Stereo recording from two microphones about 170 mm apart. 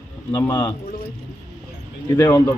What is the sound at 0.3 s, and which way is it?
Speech, 10° left (ahead or behind).